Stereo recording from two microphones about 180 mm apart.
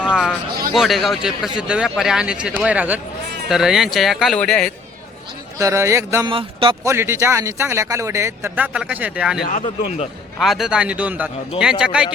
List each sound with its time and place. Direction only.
0.0 s a sound: 5° right (ahead or behind)
0.7 s a man's voice: centre (ahead or behind)
5.5 s speech: 15° right (ahead or behind)
6.3 s a man's voice: 30° right (ahead or behind)
6.8 s speech: 15° right (ahead or behind)
9.5 s speech: 40° left (ahead or behind)
10.3 s a man's voice: centre (ahead or behind)